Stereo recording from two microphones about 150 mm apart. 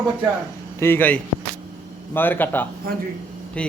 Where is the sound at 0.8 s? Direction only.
15° left (ahead or behind).